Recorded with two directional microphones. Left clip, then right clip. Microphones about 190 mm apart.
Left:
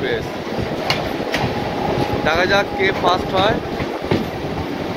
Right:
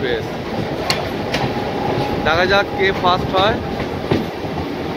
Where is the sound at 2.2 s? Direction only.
10° right (ahead or behind).